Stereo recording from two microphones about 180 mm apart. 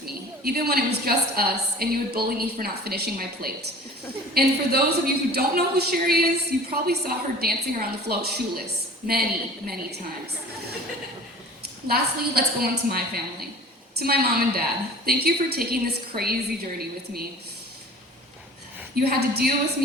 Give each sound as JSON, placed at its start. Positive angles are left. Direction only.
{"t": 0.0, "sound": "a woman's voice", "side_deg": -60}
{"t": 11.9, "sound": "a woman's voice", "side_deg": -60}
{"t": 18.9, "sound": "a woman's voice", "side_deg": -60}